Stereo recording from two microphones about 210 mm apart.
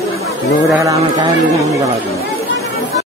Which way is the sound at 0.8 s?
15° right (ahead or behind).